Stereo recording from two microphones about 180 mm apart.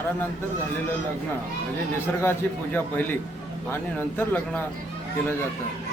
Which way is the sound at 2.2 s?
10° left (ahead or behind).